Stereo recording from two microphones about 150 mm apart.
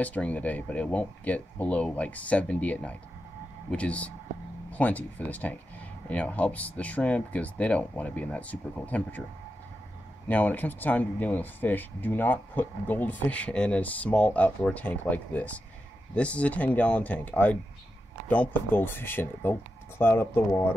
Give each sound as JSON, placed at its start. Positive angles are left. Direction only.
{"t": 0.0, "sound": "speech", "side_deg": 10}
{"t": 10.2, "sound": "speech", "side_deg": 10}